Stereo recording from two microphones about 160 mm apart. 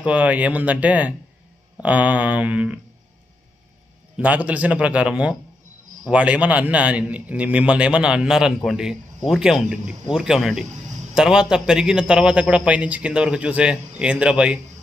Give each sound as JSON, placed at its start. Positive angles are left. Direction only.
{"t": 0.0, "sound": "a man's voice", "side_deg": -10}
{"t": 4.2, "sound": "a man's voice", "side_deg": -10}